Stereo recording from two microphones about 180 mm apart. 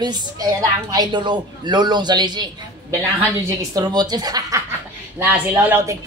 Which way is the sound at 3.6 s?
20° right (ahead or behind).